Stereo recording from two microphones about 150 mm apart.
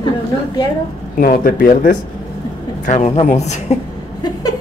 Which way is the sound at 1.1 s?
75° left (ahead or behind).